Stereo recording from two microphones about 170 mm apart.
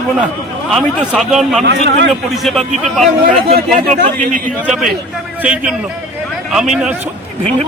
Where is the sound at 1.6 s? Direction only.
85° right.